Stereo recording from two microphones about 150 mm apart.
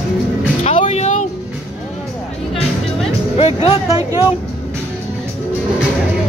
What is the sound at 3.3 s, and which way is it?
Music, 40° left (ahead or behind).